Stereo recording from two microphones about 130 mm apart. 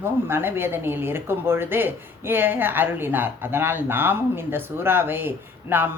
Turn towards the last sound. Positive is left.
turn(degrees=-15)  # may be behind; listen again after turning